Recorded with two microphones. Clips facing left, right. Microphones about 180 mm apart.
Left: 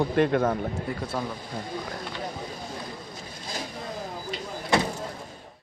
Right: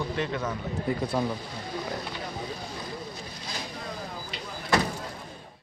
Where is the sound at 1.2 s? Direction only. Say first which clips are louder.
Right 3 dB; centre (ahead or behind).